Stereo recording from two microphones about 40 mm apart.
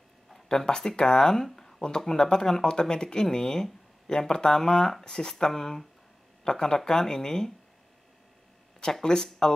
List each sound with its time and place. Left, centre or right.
0.5 s speech: centre
9.0 s speech: centre